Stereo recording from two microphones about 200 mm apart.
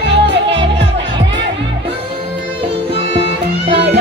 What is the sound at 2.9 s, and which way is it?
Music, 30° right (ahead or behind).